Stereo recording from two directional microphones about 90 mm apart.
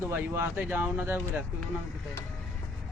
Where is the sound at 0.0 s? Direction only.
25° right (ahead or behind).